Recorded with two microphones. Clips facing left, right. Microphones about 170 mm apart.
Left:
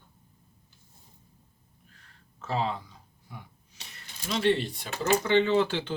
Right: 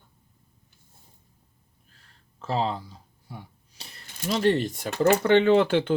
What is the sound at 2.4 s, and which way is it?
Speech, 35° right (ahead or behind).